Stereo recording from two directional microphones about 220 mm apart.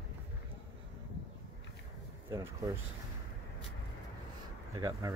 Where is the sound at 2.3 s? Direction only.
15° right (ahead or behind).